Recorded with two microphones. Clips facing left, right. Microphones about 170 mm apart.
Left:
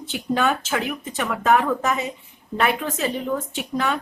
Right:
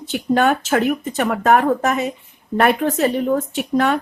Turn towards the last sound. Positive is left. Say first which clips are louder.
# right 7 dB
turn(degrees=-60)  # may be behind; listen again after turning